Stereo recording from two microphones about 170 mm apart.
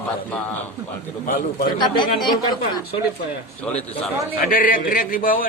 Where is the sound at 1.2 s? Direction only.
55° left (ahead or behind).